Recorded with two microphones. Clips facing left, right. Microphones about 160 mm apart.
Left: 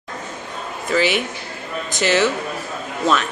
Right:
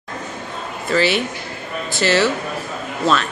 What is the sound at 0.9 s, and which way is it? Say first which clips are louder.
A woman's voice: right 1 dB; 15° left (ahead or behind).